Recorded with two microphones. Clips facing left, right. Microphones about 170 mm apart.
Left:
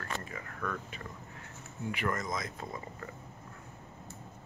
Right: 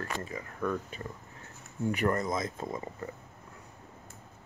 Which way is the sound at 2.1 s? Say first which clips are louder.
Right 5 dB; 30° right (ahead or behind).